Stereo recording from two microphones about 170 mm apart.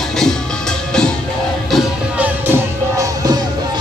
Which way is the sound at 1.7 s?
10° right (ahead or behind).